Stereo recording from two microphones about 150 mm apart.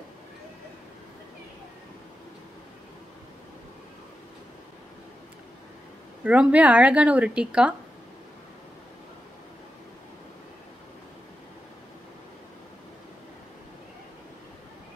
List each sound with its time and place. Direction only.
6.2 s a woman's voice: 10° right (ahead or behind)